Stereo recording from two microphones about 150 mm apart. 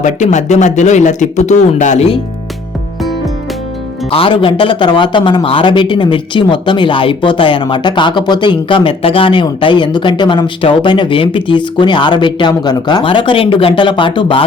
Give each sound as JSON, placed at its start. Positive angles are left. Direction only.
{"t": 0.0, "sound": "speech", "side_deg": 50}
{"t": 4.1, "sound": "speech", "side_deg": 35}